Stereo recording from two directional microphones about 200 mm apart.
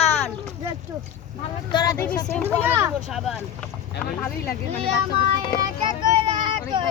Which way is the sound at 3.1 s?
Centre (ahead or behind).